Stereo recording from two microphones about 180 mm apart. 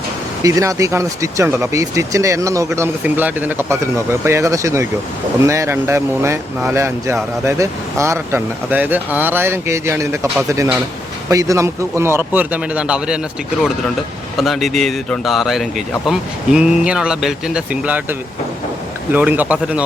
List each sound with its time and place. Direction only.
0.4 s speech: 20° right (ahead or behind)
11.3 s speech: 15° right (ahead or behind)
14.3 s speech: centre (ahead or behind)
19.1 s speech: 10° right (ahead or behind)